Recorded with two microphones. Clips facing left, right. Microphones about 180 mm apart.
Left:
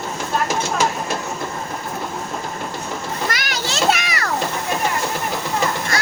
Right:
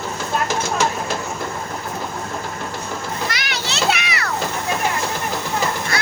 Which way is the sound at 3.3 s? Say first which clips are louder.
Left 2 dB; 45° left (ahead or behind).